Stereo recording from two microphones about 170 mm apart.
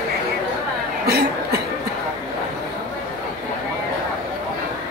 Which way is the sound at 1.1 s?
70° right (ahead or behind).